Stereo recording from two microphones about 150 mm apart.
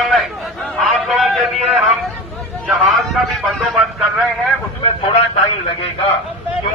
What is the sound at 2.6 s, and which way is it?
Vehicle, centre (ahead or behind).